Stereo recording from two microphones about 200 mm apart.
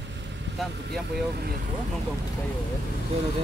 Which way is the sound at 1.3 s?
50° right (ahead or behind).